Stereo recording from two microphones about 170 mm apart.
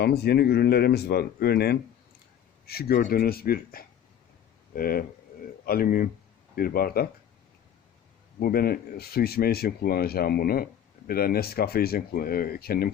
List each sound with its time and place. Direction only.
0.0 s speech: 70° left (ahead or behind)
8.4 s speech: 60° left (ahead or behind)